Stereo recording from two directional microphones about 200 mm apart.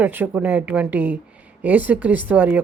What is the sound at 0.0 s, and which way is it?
Speech, 10° right (ahead or behind).